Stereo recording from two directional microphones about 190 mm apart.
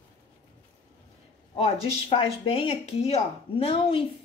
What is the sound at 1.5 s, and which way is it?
A woman's voice, 30° left (ahead or behind).